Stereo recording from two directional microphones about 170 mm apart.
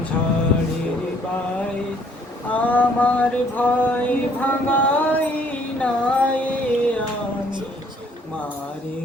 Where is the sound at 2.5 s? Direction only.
10° left (ahead or behind).